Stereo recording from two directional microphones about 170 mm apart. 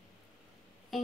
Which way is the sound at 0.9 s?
Centre (ahead or behind).